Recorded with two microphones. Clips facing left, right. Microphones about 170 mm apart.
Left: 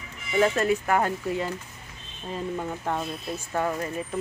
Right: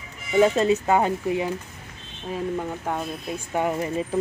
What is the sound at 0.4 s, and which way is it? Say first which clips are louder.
Speech: right 4 dB; 20° right (ahead or behind).